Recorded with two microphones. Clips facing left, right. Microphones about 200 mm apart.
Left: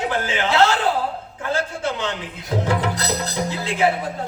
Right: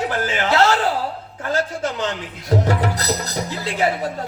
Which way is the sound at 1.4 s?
40° right (ahead or behind).